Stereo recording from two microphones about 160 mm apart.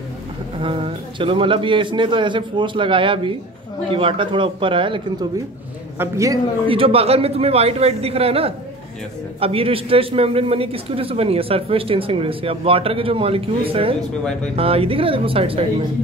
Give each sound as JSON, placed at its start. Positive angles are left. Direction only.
{"t": 0.6, "sound": "a man's voice", "side_deg": -30}
{"t": 5.9, "sound": "a man's voice", "side_deg": -20}
{"t": 6.7, "sound": "a man's voice", "side_deg": -35}